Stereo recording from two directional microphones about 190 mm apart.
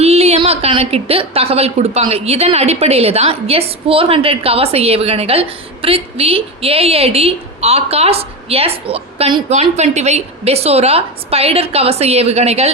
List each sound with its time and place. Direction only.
0.0 s a woman's voice: 35° right (ahead or behind)